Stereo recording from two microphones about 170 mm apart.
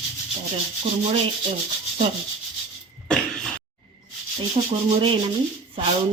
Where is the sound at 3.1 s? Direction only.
5° left (ahead or behind).